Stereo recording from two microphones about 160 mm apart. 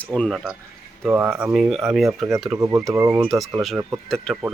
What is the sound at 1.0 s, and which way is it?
Speech, 10° right (ahead or behind).